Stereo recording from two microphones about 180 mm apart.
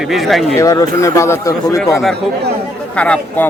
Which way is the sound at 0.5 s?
15° left (ahead or behind).